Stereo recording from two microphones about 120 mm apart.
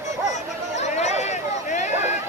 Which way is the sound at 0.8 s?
70° left (ahead or behind).